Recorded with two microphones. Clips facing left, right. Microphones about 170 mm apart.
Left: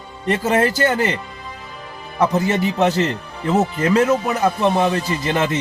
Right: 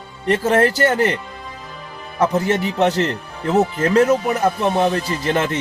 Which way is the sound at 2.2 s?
Centre (ahead or behind).